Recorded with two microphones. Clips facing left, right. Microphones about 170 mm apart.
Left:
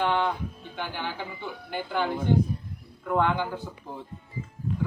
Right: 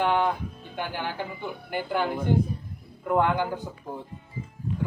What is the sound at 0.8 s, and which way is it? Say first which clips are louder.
Speech: right 2 dB; 10° right (ahead or behind).